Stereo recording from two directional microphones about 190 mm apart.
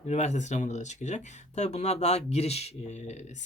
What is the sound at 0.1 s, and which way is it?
Speech, 40° left (ahead or behind).